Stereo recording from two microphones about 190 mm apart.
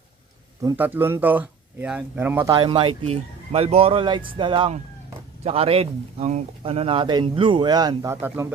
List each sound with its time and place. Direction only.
0.6 s speech: 15° right (ahead or behind)
2.5 s speech: 25° right (ahead or behind); by 8.5 s 10° right (ahead or behind)